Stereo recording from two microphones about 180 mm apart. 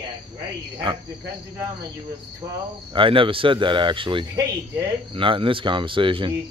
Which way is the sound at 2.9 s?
30° right (ahead or behind).